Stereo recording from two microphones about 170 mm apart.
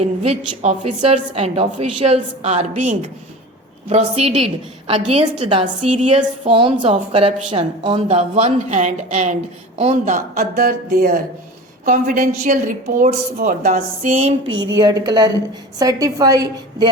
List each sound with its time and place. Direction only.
0.0 s a woman's voice: 40° right (ahead or behind)
14.2 s a woman's voice: 40° right (ahead or behind)
14.8 s a woman's voice: 25° right (ahead or behind)